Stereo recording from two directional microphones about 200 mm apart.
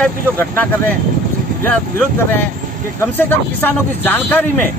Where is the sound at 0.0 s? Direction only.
10° left (ahead or behind).